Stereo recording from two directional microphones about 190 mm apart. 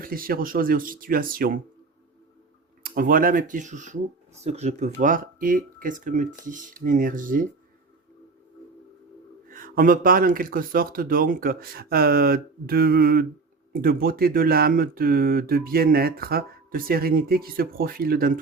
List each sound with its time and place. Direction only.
0.0 s speech: 50° right (ahead or behind)
2.8 s speech: 50° right (ahead or behind)
9.5 s speech: 50° right (ahead or behind)